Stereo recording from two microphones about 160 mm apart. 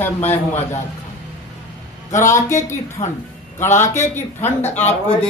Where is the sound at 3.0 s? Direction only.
40° left (ahead or behind).